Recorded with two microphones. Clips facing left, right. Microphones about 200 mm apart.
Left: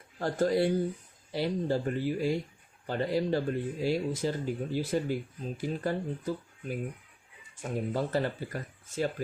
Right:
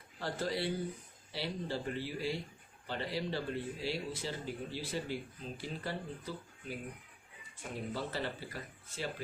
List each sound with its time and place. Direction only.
0.2 s speech: 45° left (ahead or behind)